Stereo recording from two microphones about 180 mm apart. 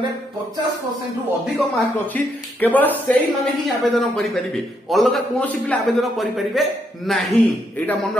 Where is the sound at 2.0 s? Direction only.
10° left (ahead or behind).